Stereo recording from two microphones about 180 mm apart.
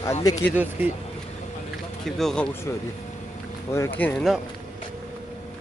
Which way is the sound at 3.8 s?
10° left (ahead or behind).